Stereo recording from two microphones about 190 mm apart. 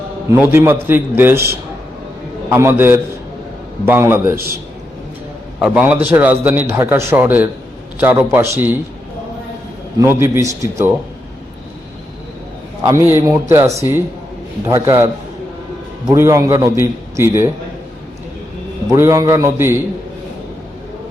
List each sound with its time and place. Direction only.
0.3 s a man's voice: 10° right (ahead or behind)
5.6 s a man's voice: 5° right (ahead or behind)
10.0 s a man's voice: 15° right (ahead or behind)
12.8 s a man's voice: 15° right (ahead or behind)
16.0 s a man's voice: 15° right (ahead or behind)
18.9 s a man's voice: 15° right (ahead or behind)